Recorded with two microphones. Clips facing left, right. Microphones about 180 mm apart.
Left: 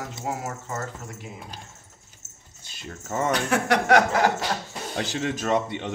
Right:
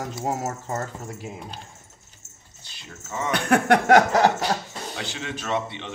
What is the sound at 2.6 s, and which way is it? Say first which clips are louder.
Speech: left 5 dB; 50° left (ahead or behind).